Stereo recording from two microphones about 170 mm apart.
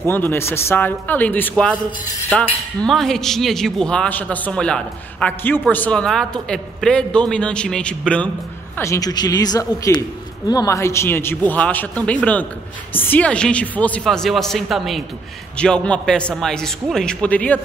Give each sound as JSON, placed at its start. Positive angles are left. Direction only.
{"t": 0.1, "sound": "a man's voice", "side_deg": 15}
{"t": 8.7, "sound": "a man's voice", "side_deg": 15}